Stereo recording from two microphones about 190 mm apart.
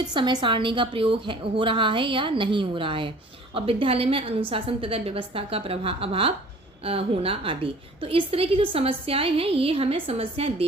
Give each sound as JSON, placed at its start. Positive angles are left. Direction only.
{"t": 0.1, "sound": "a woman's voice", "side_deg": -25}